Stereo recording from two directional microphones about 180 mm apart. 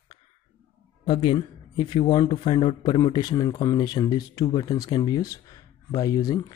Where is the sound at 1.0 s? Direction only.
25° left (ahead or behind).